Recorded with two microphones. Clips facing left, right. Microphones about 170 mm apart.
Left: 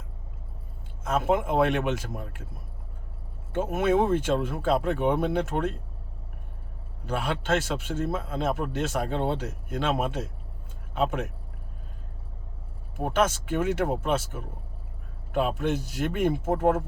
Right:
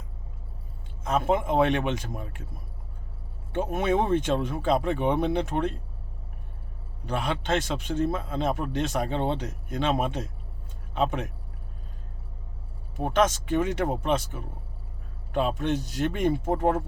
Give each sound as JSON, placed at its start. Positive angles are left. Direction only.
{"t": 1.0, "sound": "a man's voice", "side_deg": 5}
{"t": 3.5, "sound": "a man's voice", "side_deg": 5}
{"t": 7.0, "sound": "a man's voice", "side_deg": 5}
{"t": 13.0, "sound": "speech", "side_deg": 5}